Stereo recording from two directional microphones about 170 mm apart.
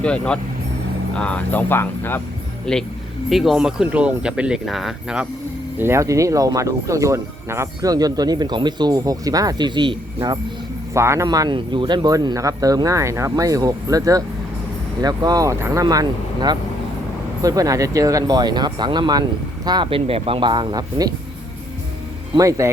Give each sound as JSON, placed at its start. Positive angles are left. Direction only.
{"t": 0.0, "sound": "speech", "side_deg": 5}
{"t": 5.8, "sound": "speech", "side_deg": -15}
{"t": 10.9, "sound": "speech", "side_deg": -15}
{"t": 22.4, "sound": "speech", "side_deg": -20}